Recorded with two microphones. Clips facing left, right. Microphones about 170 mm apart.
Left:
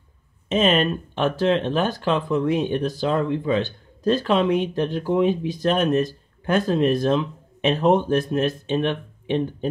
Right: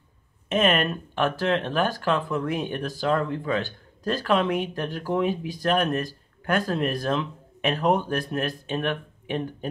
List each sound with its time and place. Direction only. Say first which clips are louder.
0.7 s speech: left 3 dB; 20° left (ahead or behind)